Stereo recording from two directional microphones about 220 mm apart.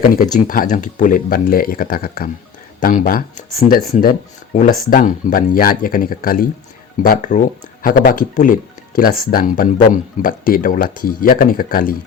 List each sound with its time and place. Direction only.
0.0 s speech: 40° left (ahead or behind)